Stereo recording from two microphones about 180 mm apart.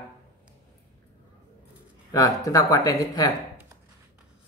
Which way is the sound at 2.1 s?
20° left (ahead or behind).